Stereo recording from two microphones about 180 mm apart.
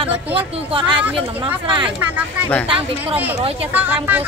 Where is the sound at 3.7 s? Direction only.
10° right (ahead or behind).